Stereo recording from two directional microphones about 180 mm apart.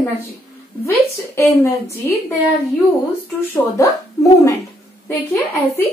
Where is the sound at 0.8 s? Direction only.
15° left (ahead or behind).